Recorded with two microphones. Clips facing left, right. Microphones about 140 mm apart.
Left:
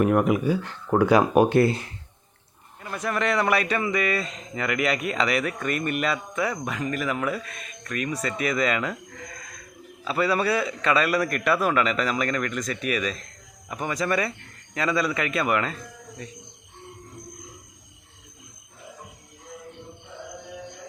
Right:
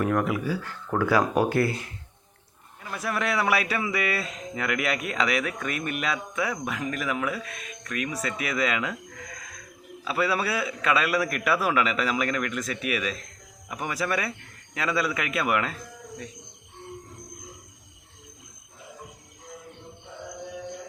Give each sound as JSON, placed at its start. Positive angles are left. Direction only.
{"t": 0.0, "sound": "speech", "side_deg": 20}
{"t": 2.8, "sound": "speech", "side_deg": 0}